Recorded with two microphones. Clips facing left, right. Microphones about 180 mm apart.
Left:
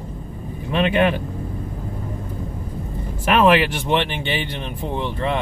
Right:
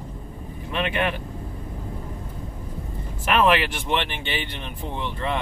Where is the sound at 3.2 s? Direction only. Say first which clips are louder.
Left 4 dB; 20° left (ahead or behind).